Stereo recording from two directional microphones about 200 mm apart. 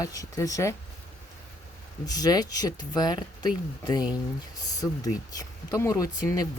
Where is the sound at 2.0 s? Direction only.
20° left (ahead or behind).